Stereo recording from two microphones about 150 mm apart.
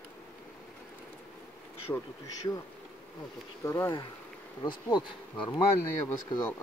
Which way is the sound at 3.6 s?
20° left (ahead or behind).